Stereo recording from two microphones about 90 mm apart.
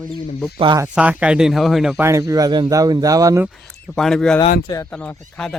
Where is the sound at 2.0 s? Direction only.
35° right (ahead or behind).